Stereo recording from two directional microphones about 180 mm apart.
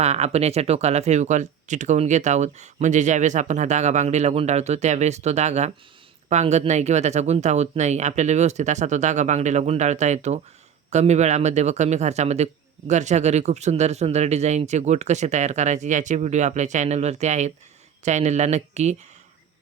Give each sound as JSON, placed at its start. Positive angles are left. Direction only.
{"t": 0.0, "sound": "speech", "side_deg": -35}